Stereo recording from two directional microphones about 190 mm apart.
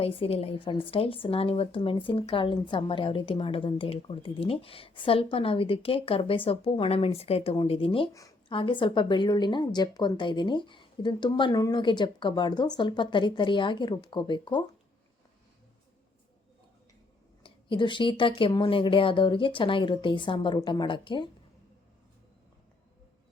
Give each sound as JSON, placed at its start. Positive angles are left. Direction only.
{"t": 0.0, "sound": "speech", "side_deg": 30}
{"t": 17.4, "sound": "speech", "side_deg": 25}